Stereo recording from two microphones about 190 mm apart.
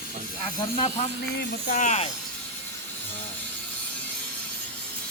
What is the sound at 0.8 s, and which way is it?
Speech, 35° left (ahead or behind).